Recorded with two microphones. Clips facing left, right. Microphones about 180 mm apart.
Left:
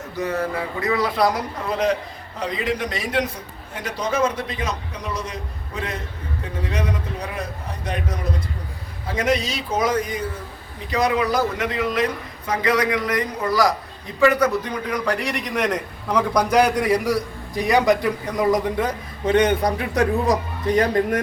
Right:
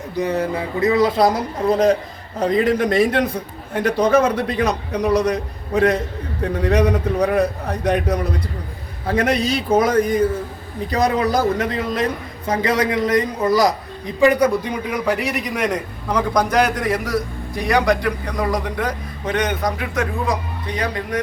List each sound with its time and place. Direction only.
0.2 s a man's voice: 15° right (ahead or behind); by 10.2 s 50° right (ahead or behind)
10.9 s a man's voice: 40° right (ahead or behind); by 21.2 s 45° left (ahead or behind)